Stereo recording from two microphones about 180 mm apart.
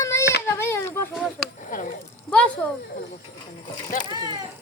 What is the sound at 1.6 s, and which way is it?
Speech, 45° left (ahead or behind).